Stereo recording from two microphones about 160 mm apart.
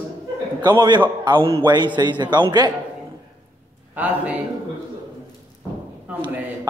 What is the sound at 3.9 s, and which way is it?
Speech, 10° right (ahead or behind).